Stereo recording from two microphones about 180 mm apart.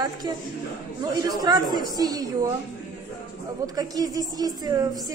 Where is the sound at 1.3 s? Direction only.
20° right (ahead or behind).